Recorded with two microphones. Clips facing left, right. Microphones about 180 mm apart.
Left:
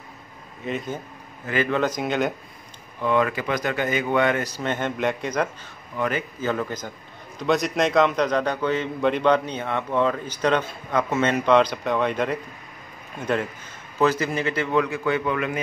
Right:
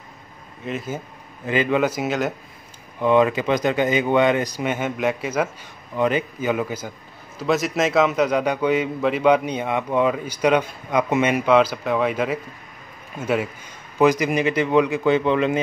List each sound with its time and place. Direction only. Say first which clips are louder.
0.7 s a man's voice: right 1 dB; 5° right (ahead or behind)
1.4 s a man's voice: right 3 dB; 20° right (ahead or behind)
3.0 s speech: right 5 dB; 20° right (ahead or behind)
5.9 s a man's voice: right 5 dB; 20° right (ahead or behind)